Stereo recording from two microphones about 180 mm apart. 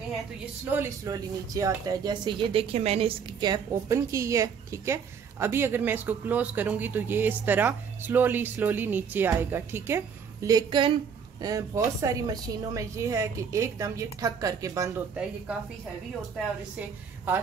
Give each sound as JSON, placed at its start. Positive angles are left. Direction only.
{"t": 0.7, "sound": "speech", "side_deg": -15}